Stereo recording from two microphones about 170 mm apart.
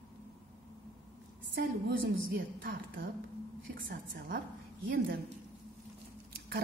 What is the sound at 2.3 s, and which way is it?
A woman's voice, 60° right (ahead or behind).